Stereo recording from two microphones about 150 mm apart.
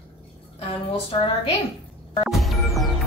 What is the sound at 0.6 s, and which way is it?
Speech, 40° left (ahead or behind).